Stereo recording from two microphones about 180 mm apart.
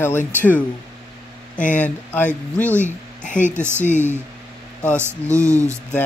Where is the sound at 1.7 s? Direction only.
10° left (ahead or behind).